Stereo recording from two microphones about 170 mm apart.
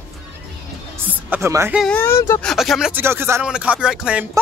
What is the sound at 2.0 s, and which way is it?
Speech, 15° left (ahead or behind).